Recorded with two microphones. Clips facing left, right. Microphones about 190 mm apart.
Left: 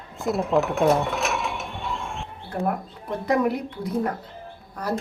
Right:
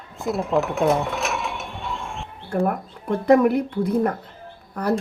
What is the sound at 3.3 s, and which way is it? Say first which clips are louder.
Speech: right 7 dB; 55° right (ahead or behind).